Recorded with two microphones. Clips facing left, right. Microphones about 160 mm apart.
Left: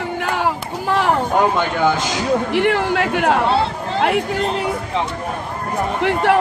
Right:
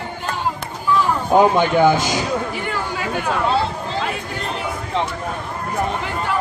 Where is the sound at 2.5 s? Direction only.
80° left.